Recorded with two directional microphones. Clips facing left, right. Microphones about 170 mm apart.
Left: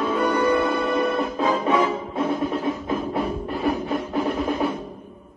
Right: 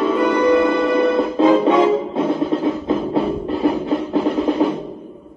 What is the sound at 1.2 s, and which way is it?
Music, 25° right (ahead or behind).